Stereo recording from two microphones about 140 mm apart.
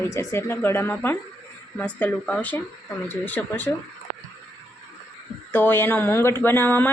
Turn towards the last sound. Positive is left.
turn(degrees=15)  # may be behind; listen again after turning